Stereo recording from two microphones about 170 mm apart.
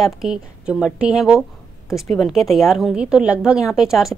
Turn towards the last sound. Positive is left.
turn(degrees=0)  # may be behind; listen again after turning